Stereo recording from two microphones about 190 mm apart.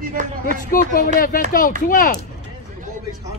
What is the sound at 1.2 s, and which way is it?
Speech, 45° left (ahead or behind).